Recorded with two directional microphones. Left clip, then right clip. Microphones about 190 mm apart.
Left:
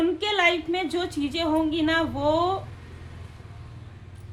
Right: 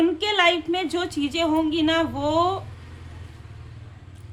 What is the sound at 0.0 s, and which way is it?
A woman's voice, 20° right (ahead or behind).